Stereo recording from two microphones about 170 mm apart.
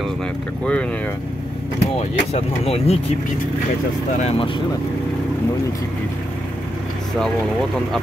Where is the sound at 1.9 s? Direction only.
40° left (ahead or behind).